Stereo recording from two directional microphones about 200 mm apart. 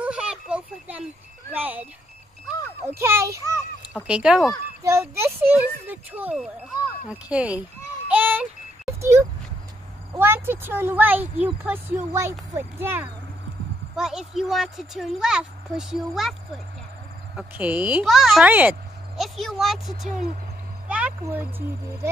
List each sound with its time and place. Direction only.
0.0 s a sound: 5° right (ahead or behind)
1.5 s a child's voice: 10° right (ahead or behind)
3.0 s a child's voice: 10° right (ahead or behind)
8.1 s a sound: 10° right (ahead or behind)
10.1 s a child's voice: 10° right (ahead or behind)
17.4 s a child's voice: 5° right (ahead or behind)